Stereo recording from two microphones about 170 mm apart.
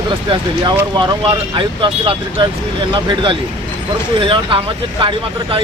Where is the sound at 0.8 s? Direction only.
20° right (ahead or behind).